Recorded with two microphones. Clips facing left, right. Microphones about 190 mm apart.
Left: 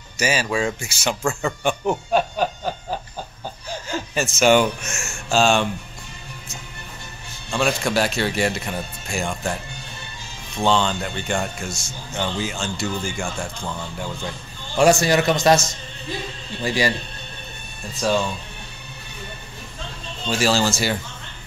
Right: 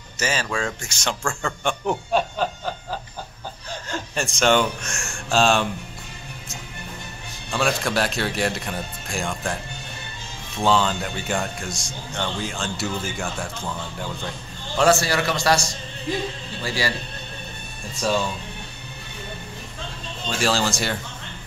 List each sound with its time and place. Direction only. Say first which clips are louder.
0.2 s a man's voice: left 4 dB; 10° left (ahead or behind)
3.9 s speech: left 3 dB; 5° left (ahead or behind)
7.5 s speech: left 2 dB; centre (ahead or behind)
10.6 s speech: left 1 dB; 5° right (ahead or behind)
14.8 s a man's voice: left 3 dB; 15° left (ahead or behind)
20.2 s speech: left 3 dB; 5° left (ahead or behind)